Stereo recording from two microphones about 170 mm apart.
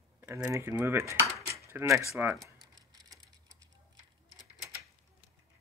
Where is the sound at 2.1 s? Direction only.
5° right (ahead or behind).